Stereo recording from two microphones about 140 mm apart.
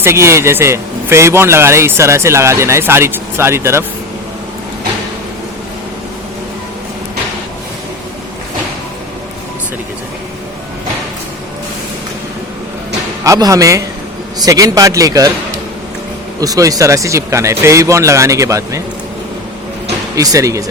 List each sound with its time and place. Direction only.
0.0 s a man's voice: 20° right (ahead or behind)
13.2 s a man's voice: 25° right (ahead or behind)
16.4 s a man's voice: 25° right (ahead or behind)
20.1 s a man's voice: 25° right (ahead or behind)